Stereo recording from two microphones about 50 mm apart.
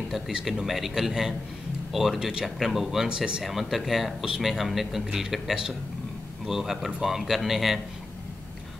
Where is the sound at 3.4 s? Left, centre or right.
Centre.